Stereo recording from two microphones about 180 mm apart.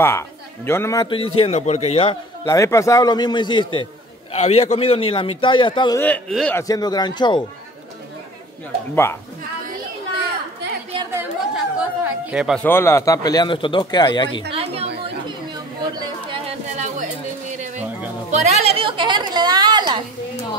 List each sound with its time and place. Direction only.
0.7 s speech: 15° left (ahead or behind)
1.1 s a man's voice: 30° left (ahead or behind)
2.4 s speech: 15° left (ahead or behind)
4.3 s a man's voice: 35° left (ahead or behind)
5.9 s speech: 10° left (ahead or behind)
6.7 s speech: 20° left (ahead or behind)
8.9 s speech: 10° left (ahead or behind)
9.7 s chatter: 60° right (ahead or behind)
11.5 s speech: 5° right (ahead or behind)
12.6 s speech: 15° left (ahead or behind)
14.5 s chatter: 35° right (ahead or behind)
16.3 s a sound: 35° right (ahead or behind)
18.3 s a sound: 40° right (ahead or behind); by 20.0 s 20° right (ahead or behind)